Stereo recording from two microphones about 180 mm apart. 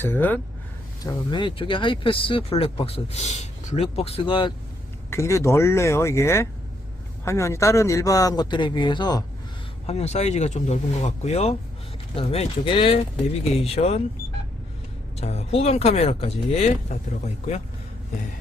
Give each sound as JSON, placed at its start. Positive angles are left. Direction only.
{"t": 0.0, "sound": "speech", "side_deg": 10}
{"t": 1.0, "sound": "speech", "side_deg": 25}
{"t": 5.1, "sound": "speech", "side_deg": 15}
{"t": 9.8, "sound": "speech", "side_deg": 35}
{"t": 15.2, "sound": "speech", "side_deg": 35}